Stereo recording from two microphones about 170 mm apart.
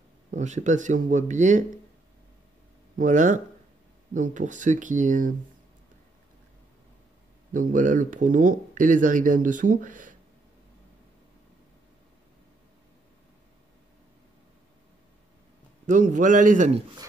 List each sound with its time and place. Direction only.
0.3 s speech: 45° right (ahead or behind)
3.0 s speech: 50° right (ahead or behind)
7.5 s speech: 50° right (ahead or behind)
15.9 s speech: 50° right (ahead or behind)